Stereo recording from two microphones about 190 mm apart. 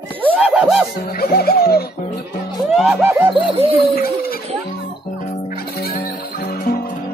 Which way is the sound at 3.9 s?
50° left (ahead or behind).